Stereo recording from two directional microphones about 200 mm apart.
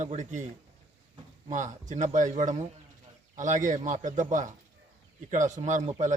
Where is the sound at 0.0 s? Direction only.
35° right (ahead or behind).